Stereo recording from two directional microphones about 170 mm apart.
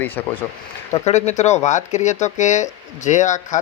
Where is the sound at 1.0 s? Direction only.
40° left (ahead or behind).